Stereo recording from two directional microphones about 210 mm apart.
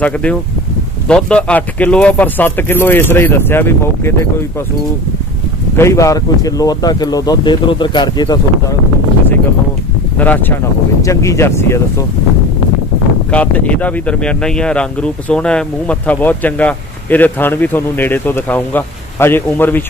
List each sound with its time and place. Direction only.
0.0 s speech: 5° left (ahead or behind)
5.8 s speech: 15° left (ahead or behind)
10.1 s speech: 10° left (ahead or behind)
13.3 s speech: 5° left (ahead or behind)